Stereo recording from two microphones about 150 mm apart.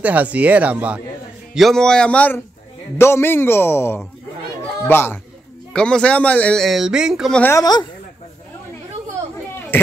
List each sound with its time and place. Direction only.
0.0 s a man's voice: 10° right (ahead or behind)
7.3 s a man's voice: 15° left (ahead or behind)